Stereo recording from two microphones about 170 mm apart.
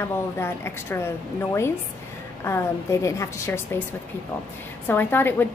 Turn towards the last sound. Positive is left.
turn(degrees=10)  # may be behind; listen again after turning